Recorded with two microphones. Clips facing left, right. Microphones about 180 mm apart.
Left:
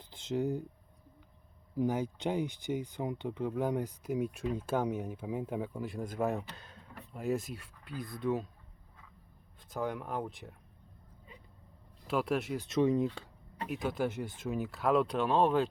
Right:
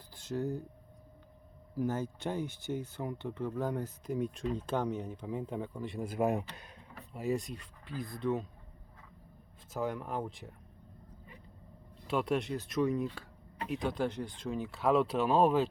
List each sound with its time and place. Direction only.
0.1 s speech: 20° left (ahead or behind)
1.7 s speech: 15° left (ahead or behind); by 6.8 s 15° right (ahead or behind)
7.1 s speech: centre (ahead or behind)
9.7 s speech: centre (ahead or behind)
12.0 s speech: centre (ahead or behind)
12.6 s speech: 25° left (ahead or behind)
13.7 s speech: 5° left (ahead or behind)